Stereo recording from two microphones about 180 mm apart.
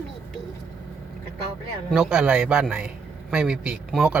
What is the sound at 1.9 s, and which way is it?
Speech, 5° right (ahead or behind).